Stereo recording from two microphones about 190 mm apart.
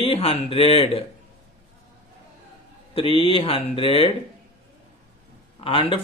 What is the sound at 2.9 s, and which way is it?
Speech, 25° left (ahead or behind).